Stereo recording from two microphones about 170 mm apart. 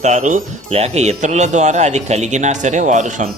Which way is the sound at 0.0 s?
45° right (ahead or behind).